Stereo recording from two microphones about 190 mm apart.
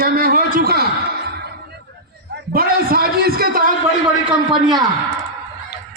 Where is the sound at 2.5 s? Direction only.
50° right (ahead or behind).